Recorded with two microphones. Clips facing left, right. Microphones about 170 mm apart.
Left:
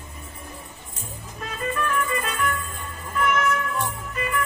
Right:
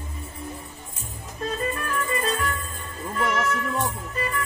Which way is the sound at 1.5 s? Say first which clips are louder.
Left 1 dB; 30° right (ahead or behind).